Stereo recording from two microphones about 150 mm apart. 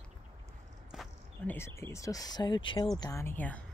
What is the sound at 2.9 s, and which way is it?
Speech, 20° left (ahead or behind).